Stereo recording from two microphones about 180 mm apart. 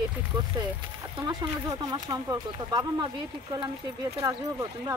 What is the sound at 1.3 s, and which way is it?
Speech, 20° right (ahead or behind).